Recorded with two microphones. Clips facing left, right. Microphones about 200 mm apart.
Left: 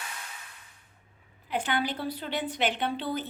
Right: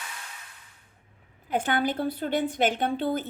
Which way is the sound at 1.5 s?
50° right (ahead or behind).